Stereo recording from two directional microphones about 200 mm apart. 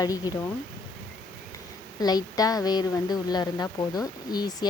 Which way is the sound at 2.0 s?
20° left (ahead or behind).